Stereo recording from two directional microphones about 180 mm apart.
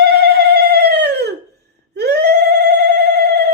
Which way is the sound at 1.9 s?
65° right (ahead or behind).